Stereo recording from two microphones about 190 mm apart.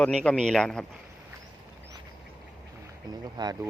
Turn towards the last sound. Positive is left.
turn(degrees=-20)  # may be behind; listen again after turning